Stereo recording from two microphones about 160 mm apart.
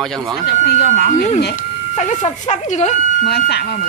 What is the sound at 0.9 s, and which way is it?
Speech, 50° left (ahead or behind).